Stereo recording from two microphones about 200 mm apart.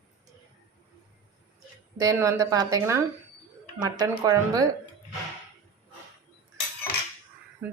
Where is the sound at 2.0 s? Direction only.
15° right (ahead or behind).